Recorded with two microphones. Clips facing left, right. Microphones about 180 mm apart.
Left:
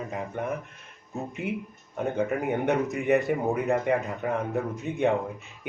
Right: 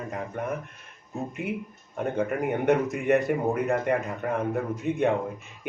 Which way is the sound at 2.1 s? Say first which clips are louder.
Even; centre (ahead or behind).